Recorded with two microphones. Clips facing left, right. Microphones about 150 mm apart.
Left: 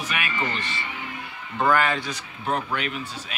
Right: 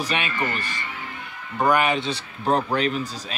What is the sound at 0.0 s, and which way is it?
Speech, 30° right (ahead or behind).